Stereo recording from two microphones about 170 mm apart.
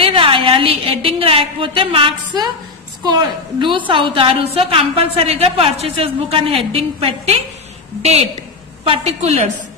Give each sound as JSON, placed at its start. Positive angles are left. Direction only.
{"t": 0.0, "sound": "a woman's voice", "side_deg": -30}